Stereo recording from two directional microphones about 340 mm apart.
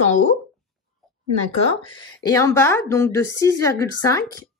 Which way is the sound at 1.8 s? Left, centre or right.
Centre.